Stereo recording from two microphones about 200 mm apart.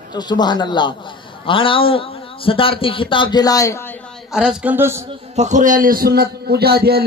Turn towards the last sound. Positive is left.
turn(degrees=-50)  # may be behind; listen again after turning